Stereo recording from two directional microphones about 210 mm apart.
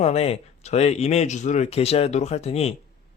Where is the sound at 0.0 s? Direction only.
30° left (ahead or behind).